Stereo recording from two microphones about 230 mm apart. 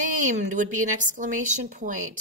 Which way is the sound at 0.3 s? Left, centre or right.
Right.